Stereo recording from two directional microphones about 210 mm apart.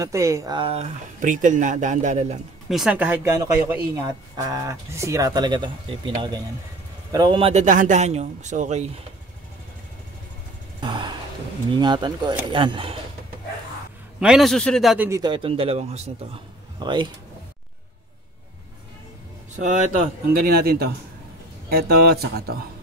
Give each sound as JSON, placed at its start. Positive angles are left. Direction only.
{"t": 0.0, "sound": "speech", "side_deg": -15}
{"t": 2.7, "sound": "speech", "side_deg": -5}
{"t": 10.8, "sound": "a sound", "side_deg": -20}
{"t": 11.7, "sound": "speech", "side_deg": -20}
{"t": 14.2, "sound": "a man's voice", "side_deg": 0}
{"t": 15.0, "sound": "speech", "side_deg": -20}
{"t": 19.6, "sound": "speech", "side_deg": -35}
{"t": 20.3, "sound": "speech", "side_deg": -45}